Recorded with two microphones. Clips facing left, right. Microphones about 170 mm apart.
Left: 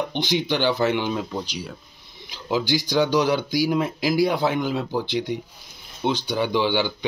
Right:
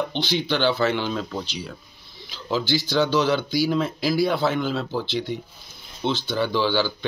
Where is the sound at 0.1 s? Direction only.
15° left (ahead or behind).